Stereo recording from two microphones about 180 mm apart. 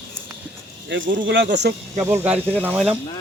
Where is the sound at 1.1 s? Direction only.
85° right.